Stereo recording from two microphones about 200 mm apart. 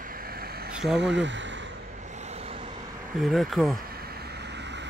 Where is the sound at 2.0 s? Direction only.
35° right (ahead or behind).